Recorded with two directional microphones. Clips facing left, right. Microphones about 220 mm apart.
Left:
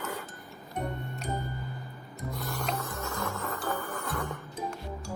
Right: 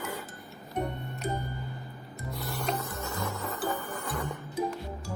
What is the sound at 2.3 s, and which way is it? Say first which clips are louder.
Music: right 2 dB; 5° right (ahead or behind).